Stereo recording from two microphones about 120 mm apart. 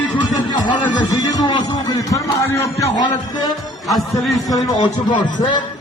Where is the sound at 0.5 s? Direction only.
35° left (ahead or behind).